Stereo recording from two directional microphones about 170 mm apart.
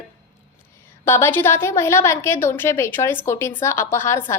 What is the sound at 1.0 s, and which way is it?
A woman's voice, 15° left (ahead or behind).